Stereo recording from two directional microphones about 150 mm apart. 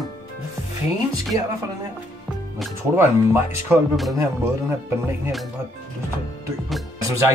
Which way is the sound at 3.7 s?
10° right (ahead or behind).